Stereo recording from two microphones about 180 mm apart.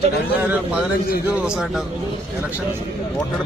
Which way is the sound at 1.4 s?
5° right (ahead or behind).